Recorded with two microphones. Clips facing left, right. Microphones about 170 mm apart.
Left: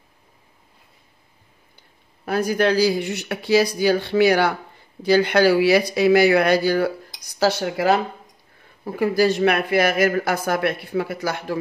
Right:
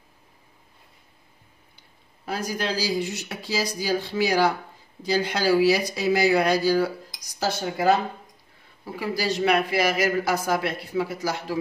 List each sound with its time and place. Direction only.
2.2 s speech: 60° left (ahead or behind); by 8.0 s 75° left (ahead or behind)
8.8 s speech: 55° left (ahead or behind)